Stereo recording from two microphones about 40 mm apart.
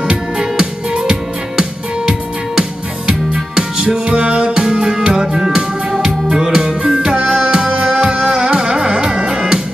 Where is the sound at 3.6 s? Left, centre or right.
Right.